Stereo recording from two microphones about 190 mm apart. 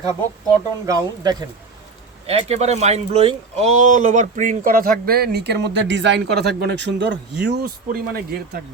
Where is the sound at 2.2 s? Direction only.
35° right (ahead or behind); by 7.7 s 60° right (ahead or behind).